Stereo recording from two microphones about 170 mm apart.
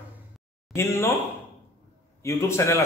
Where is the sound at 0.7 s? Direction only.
15° left (ahead or behind).